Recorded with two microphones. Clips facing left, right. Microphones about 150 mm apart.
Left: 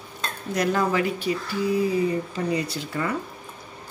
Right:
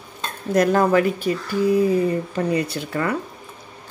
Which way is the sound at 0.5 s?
50° right (ahead or behind).